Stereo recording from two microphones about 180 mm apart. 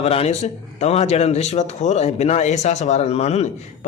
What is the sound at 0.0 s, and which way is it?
Speech, 35° left (ahead or behind).